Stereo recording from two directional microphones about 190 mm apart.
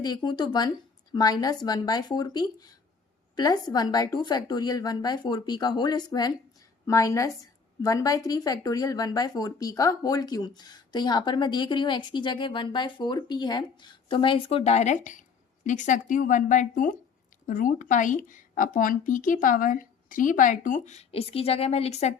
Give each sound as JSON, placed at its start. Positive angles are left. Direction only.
{"t": 0.0, "sound": "a woman's voice", "side_deg": 20}